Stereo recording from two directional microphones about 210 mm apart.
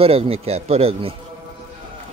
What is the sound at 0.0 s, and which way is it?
A man's voice, 25° right (ahead or behind).